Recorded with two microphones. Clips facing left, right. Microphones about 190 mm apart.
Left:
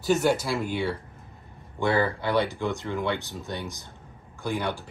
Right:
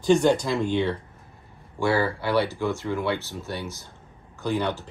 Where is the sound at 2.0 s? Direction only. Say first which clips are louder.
Right 1 dB; 15° left (ahead or behind).